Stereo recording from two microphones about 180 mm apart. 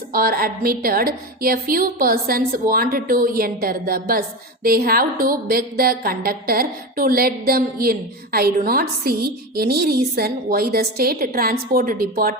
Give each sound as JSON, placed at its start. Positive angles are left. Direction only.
{"t": 0.1, "sound": "a woman's voice", "side_deg": -55}